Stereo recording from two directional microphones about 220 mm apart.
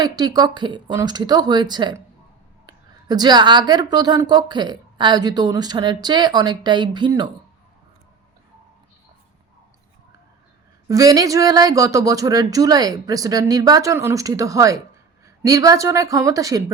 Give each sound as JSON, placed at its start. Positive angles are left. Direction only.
{"t": 0.0, "sound": "a woman's voice", "side_deg": -20}
{"t": 10.8, "sound": "speech", "side_deg": -15}